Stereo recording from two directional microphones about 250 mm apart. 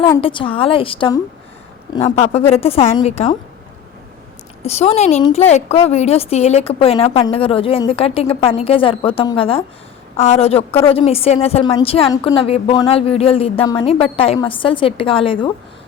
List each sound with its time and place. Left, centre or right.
0.0 s a woman's voice: centre
4.6 s a woman's voice: left